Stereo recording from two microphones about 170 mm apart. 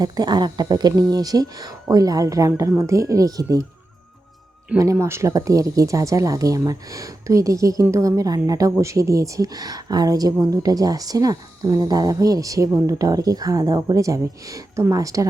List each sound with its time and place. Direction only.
0.0 s speech: 25° right (ahead or behind)
4.8 s speech: 15° right (ahead or behind)